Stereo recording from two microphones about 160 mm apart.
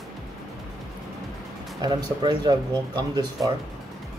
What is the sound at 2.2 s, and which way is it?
Speech, 25° right (ahead or behind).